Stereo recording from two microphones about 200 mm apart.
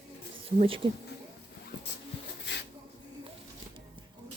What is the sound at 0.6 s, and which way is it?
Speech, 25° right (ahead or behind).